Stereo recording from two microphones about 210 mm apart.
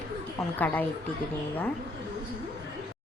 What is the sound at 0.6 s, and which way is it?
Speech, 10° left (ahead or behind).